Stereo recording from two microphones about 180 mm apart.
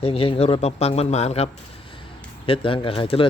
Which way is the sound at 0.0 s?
30° left (ahead or behind).